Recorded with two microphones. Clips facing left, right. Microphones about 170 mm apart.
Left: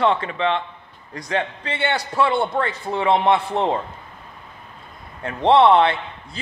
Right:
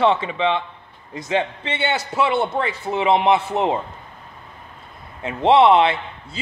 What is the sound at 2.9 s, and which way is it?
Speech, 20° right (ahead or behind).